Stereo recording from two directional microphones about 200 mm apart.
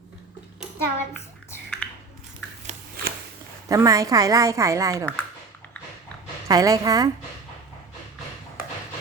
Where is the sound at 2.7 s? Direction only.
50° right (ahead or behind).